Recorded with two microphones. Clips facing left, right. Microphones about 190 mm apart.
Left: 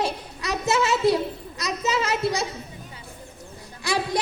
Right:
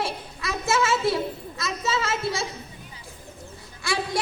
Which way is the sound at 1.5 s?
15° left (ahead or behind).